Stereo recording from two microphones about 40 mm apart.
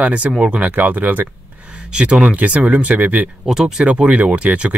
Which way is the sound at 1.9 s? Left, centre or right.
Right.